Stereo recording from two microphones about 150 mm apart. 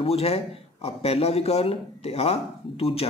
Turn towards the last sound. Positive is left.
turn(degrees=40)  # may be behind; listen again after turning